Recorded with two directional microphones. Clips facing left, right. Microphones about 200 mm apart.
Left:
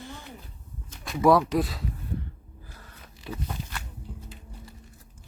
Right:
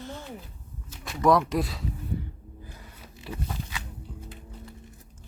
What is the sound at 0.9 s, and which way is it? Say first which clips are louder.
Speech: left 2 dB; centre (ahead or behind).